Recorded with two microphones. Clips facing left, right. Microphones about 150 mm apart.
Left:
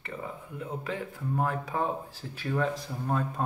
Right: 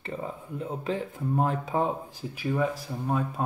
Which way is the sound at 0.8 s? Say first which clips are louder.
Right 6 dB; 25° right (ahead or behind).